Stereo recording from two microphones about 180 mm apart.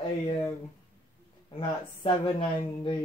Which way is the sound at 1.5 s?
30° left (ahead or behind).